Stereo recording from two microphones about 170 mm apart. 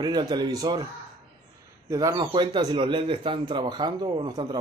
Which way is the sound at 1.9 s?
20° right (ahead or behind).